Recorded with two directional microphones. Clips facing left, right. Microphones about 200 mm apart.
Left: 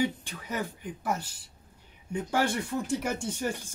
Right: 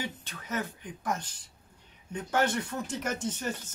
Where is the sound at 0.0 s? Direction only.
10° left (ahead or behind).